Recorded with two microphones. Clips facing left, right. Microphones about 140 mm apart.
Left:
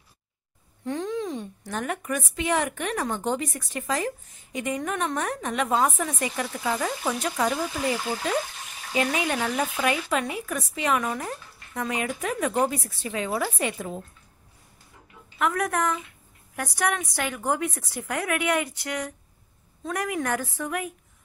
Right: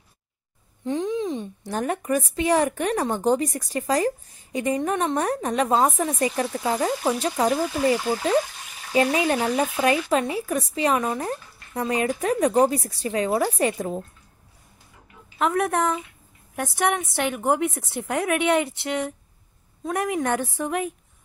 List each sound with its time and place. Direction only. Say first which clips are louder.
0.8 s a sound: right 4 dB; 20° right (ahead or behind)
1.7 s speech: right 5 dB; 35° right (ahead or behind)
8.9 s speech: right 5 dB; 35° right (ahead or behind)
15.3 s a woman's voice: right 3 dB; 25° right (ahead or behind)